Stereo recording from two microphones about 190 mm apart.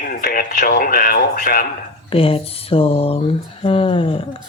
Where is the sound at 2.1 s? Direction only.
30° left (ahead or behind).